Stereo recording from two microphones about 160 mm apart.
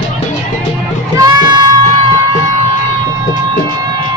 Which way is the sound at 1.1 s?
25° right (ahead or behind).